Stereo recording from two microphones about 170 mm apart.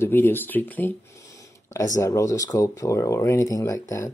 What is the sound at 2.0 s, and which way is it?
Speech, 20° left (ahead or behind).